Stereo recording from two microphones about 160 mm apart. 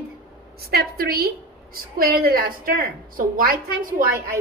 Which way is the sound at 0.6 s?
75° right (ahead or behind).